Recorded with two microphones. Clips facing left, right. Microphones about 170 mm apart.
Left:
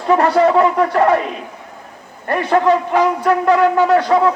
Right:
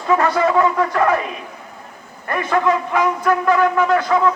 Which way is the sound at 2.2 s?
35° left (ahead or behind).